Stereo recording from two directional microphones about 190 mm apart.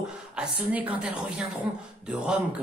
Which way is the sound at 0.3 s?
5° right (ahead or behind).